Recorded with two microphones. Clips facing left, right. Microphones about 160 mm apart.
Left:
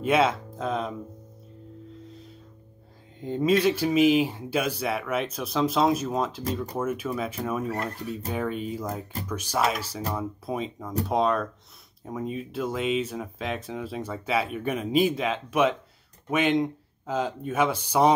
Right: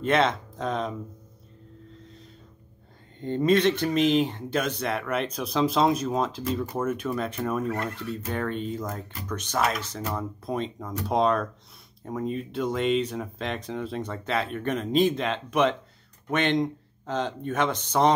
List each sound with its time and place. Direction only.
0.0 s speech: 5° left (ahead or behind)
3.2 s speech: 5° left (ahead or behind)
7.7 s speech: 35° left (ahead or behind)
8.3 s speech: 5° left (ahead or behind)